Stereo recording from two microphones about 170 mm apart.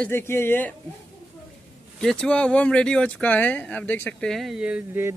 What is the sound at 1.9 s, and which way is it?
A man's voice, 5° left (ahead or behind).